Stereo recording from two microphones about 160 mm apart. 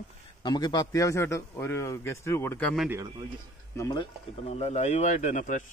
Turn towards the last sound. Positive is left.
turn(degrees=50)  # may be behind; listen again after turning